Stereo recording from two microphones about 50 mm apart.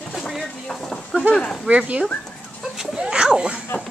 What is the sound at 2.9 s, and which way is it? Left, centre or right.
Speech, centre.